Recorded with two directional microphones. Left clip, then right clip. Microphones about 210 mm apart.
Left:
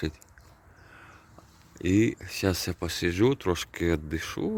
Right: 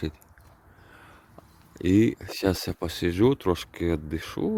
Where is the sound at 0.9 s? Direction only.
20° right (ahead or behind).